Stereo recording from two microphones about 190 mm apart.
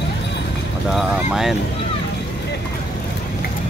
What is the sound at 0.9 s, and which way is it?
Speech, centre (ahead or behind).